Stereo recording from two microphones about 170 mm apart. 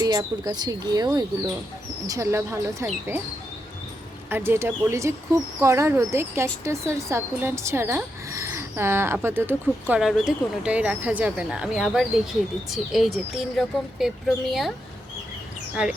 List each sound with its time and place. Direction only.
0.0 s speech: 25° right (ahead or behind)
4.3 s speech: 15° right (ahead or behind)